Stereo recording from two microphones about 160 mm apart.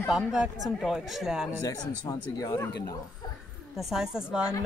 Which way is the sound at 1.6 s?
20° left (ahead or behind).